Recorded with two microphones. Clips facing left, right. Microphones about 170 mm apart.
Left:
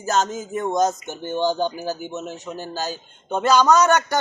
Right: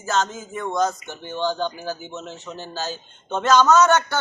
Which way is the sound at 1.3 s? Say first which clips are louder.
Left 3 dB; 15° left (ahead or behind).